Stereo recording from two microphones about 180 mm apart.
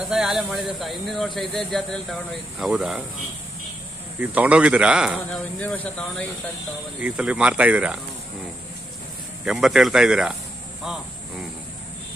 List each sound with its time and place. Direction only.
0.0 s speech: centre (ahead or behind)
4.2 s speech: 10° right (ahead or behind)
5.6 s speech: 5° left (ahead or behind)
7.0 s speech: 5° right (ahead or behind)
9.4 s speech: 5° right (ahead or behind)